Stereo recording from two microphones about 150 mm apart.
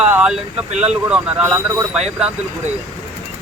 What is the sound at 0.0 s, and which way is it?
Speech, 10° right (ahead or behind).